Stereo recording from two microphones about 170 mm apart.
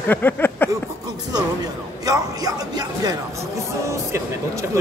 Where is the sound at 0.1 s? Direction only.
10° left (ahead or behind).